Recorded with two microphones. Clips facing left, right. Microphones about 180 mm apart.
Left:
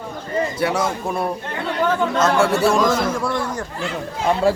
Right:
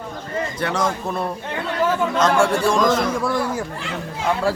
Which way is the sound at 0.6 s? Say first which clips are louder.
Right 2 dB; 10° left (ahead or behind).